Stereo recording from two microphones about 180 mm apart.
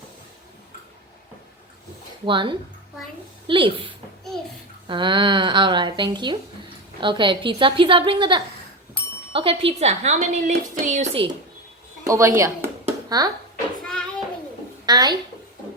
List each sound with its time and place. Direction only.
2.2 s speech: 25° right (ahead or behind)
12.0 s a woman's voice: 15° right (ahead or behind)
13.8 s a sound: 5° left (ahead or behind)
14.8 s a woman's voice: 25° right (ahead or behind)